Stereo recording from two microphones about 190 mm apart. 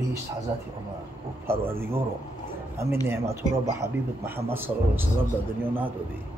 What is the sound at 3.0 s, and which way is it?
A man's voice, 15° right (ahead or behind).